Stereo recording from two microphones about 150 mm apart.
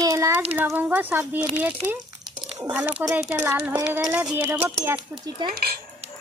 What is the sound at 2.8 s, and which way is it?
Speech, 10° right (ahead or behind).